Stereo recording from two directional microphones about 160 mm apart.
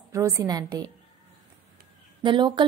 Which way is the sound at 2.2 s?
30° right (ahead or behind).